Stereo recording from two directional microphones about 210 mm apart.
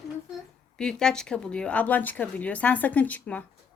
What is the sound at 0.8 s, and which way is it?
Speech, 5° left (ahead or behind).